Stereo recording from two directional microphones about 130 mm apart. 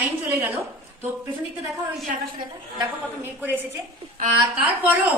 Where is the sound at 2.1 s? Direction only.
85° right.